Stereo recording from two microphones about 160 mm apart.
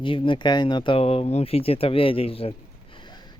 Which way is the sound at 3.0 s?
30° left (ahead or behind).